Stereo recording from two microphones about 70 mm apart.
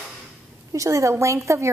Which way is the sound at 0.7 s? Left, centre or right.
Right.